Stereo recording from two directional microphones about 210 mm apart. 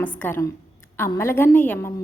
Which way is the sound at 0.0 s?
10° left (ahead or behind).